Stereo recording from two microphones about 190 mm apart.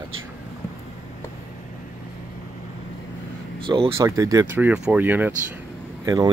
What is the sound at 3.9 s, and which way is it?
Speech, 15° right (ahead or behind).